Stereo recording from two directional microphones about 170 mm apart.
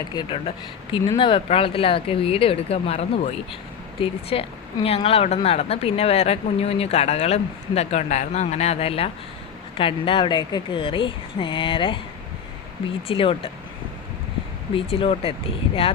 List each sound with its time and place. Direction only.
0.1 s speech: 30° left (ahead or behind)
13.1 s speech: 30° left (ahead or behind)
14.8 s speech: 30° left (ahead or behind)